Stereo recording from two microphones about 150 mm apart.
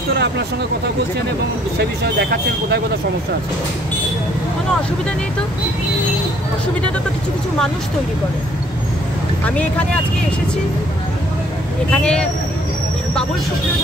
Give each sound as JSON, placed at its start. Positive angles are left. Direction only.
{"t": 1.8, "sound": "speech", "side_deg": -90}
{"t": 9.4, "sound": "speech", "side_deg": 10}
{"t": 11.9, "sound": "speech", "side_deg": 5}